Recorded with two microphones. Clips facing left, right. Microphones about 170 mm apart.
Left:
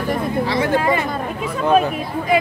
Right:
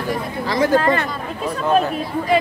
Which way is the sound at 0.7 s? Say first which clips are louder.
Right 1 dB; 10° left (ahead or behind).